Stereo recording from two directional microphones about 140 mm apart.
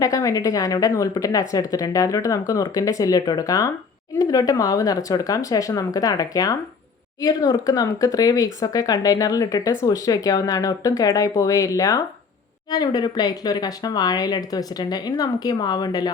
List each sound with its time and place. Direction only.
0.0 s a woman's voice: 25° left (ahead or behind)